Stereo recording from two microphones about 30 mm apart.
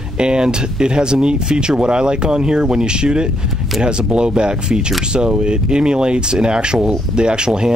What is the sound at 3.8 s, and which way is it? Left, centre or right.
Speech, right.